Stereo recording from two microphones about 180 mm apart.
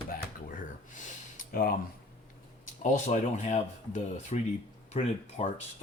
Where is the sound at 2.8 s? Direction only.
40° left (ahead or behind).